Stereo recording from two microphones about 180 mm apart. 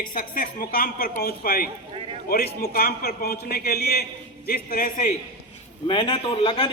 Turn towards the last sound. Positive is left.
turn(degrees=30)  # may be behind; listen again after turning